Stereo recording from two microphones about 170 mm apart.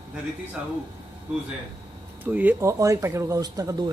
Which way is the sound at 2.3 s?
10° right (ahead or behind).